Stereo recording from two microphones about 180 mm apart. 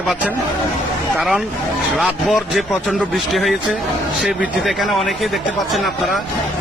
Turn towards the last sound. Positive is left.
turn(degrees=-5)  # may be behind; listen again after turning